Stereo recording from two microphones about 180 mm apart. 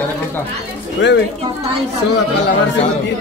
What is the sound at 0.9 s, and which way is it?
Speech, 75° left (ahead or behind).